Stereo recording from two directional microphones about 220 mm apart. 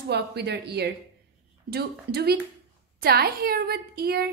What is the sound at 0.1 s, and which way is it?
A woman's voice, 50° right (ahead or behind).